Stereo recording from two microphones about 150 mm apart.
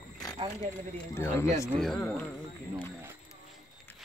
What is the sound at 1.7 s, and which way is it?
Speech, centre (ahead or behind).